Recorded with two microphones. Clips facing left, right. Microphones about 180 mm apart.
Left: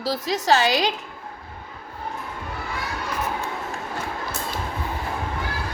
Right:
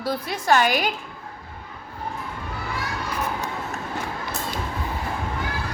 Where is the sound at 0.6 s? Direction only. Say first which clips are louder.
Left 1 dB; 90° left.